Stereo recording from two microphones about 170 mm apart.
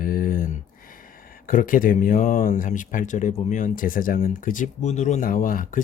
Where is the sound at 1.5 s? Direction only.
55° left (ahead or behind).